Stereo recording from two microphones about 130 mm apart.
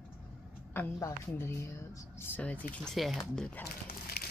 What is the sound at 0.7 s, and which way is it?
Speech, 25° left (ahead or behind).